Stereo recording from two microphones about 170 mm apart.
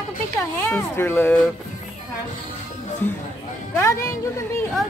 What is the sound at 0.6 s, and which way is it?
Speech, 15° left (ahead or behind).